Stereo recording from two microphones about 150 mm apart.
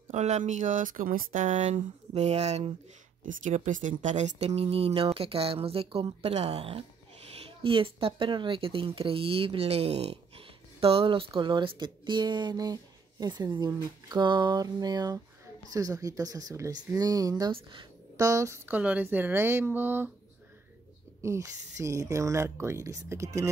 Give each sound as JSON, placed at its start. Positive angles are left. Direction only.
{"t": 0.1, "sound": "speech", "side_deg": -50}
{"t": 3.3, "sound": "speech", "side_deg": -60}
{"t": 18.2, "sound": "speech", "side_deg": -20}
{"t": 21.2, "sound": "speech", "side_deg": -20}